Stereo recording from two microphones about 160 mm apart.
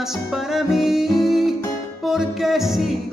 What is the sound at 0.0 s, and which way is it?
Music, centre (ahead or behind).